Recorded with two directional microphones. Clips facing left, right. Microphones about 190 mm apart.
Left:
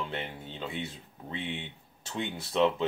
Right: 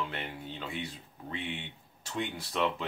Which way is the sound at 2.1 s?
25° left (ahead or behind).